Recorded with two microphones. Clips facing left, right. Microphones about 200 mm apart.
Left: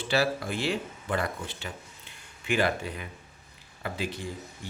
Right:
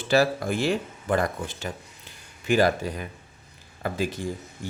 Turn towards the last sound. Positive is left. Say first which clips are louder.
# right 6 dB
turn(degrees=-45)  # may be behind; listen again after turning